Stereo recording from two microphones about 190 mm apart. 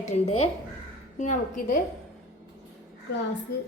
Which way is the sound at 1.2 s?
45° left (ahead or behind).